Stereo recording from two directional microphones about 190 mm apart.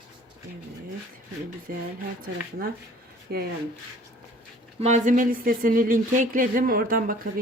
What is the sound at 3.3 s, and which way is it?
Speech, 55° right (ahead or behind).